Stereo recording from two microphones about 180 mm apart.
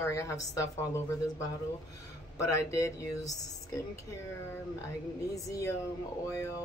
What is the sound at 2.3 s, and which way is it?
Speech, 15° left (ahead or behind).